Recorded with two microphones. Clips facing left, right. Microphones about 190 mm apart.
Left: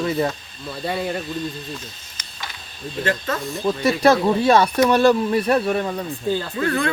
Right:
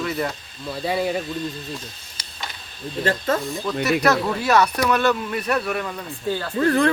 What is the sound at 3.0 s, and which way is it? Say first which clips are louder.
Speech: right 2 dB; 30° right (ahead or behind).